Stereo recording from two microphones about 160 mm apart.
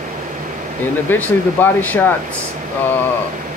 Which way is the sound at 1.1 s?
10° left (ahead or behind).